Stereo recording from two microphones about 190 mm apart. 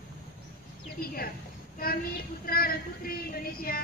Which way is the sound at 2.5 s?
50° left (ahead or behind).